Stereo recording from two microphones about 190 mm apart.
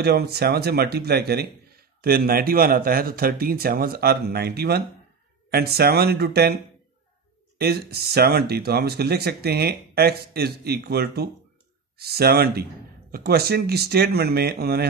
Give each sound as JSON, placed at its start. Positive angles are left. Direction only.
{"t": 0.0, "sound": "speech", "side_deg": -55}